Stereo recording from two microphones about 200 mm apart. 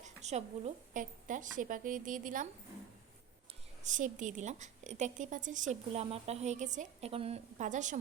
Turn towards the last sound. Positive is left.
turn(degrees=-40)  # may be behind; listen again after turning